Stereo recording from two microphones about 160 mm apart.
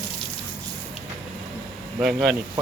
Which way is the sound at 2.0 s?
5° right (ahead or behind).